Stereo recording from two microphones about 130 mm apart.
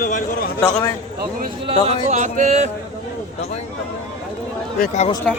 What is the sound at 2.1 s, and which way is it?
Speech, 65° right (ahead or behind).